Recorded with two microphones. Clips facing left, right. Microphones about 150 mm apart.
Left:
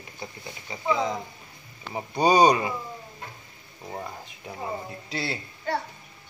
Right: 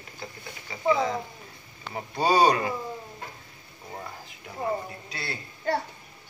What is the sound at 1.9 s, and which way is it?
Speech, 15° left (ahead or behind).